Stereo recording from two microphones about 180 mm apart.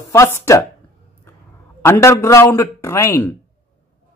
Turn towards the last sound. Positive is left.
turn(degrees=15)  # may be behind; listen again after turning